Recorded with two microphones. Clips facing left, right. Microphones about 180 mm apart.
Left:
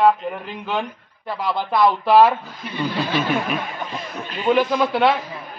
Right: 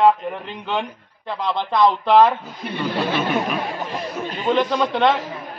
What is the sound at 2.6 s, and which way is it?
Speech, 60° right (ahead or behind).